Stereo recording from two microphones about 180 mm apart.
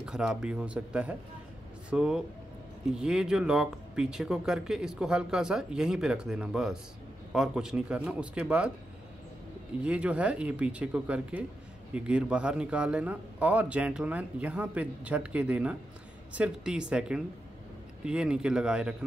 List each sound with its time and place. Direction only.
0.0 s speech: 5° right (ahead or behind)
9.8 s speech: 5° right (ahead or behind)